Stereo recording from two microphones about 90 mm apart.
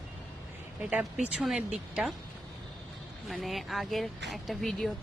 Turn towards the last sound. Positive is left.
turn(degrees=5)  # may be behind; listen again after turning